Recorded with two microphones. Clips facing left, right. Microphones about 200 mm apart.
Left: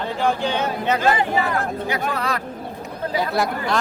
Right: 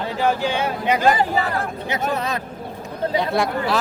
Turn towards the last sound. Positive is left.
turn(degrees=0)  # may be behind; listen again after turning